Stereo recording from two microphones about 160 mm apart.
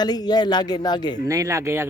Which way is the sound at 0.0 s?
25° left (ahead or behind).